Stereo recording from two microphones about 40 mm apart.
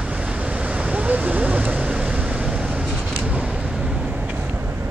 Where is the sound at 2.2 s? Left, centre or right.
Right.